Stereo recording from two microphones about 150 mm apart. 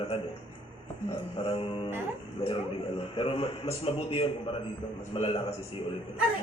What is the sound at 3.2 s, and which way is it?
A man's voice, 35° left (ahead or behind).